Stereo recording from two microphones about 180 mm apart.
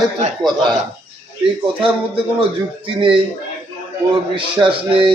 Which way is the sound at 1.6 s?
30° right (ahead or behind).